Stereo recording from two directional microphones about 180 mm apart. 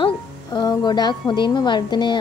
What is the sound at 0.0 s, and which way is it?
Speech, 20° left (ahead or behind).